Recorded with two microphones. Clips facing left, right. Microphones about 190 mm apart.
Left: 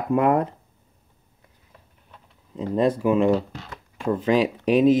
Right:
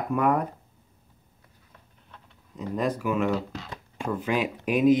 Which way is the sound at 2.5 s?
30° left (ahead or behind).